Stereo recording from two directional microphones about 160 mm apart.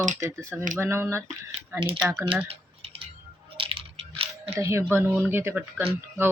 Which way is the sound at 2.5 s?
40° right (ahead or behind).